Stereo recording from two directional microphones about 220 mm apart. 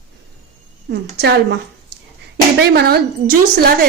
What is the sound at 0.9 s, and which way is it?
Speech, 50° right (ahead or behind).